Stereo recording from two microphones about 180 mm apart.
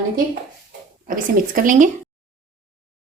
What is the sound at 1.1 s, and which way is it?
Speech, 50° right (ahead or behind).